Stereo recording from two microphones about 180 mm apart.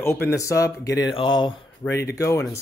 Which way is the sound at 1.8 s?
15° left (ahead or behind).